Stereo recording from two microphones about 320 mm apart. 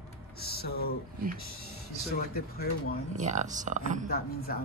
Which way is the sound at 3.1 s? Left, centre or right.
Right.